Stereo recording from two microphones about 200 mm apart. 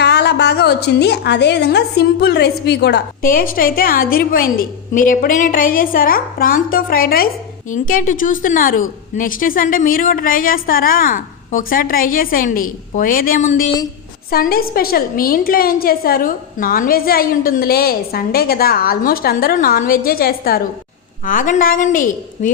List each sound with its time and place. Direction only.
0.0 s a woman's voice: 55° left (ahead or behind); by 22.5 s 40° left (ahead or behind)